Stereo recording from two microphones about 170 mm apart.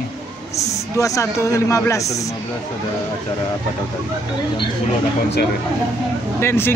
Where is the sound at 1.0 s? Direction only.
20° left (ahead or behind).